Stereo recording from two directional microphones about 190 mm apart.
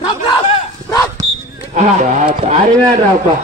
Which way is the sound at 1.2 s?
20° right (ahead or behind).